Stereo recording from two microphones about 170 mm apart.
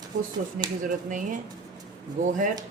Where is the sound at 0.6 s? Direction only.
50° right (ahead or behind).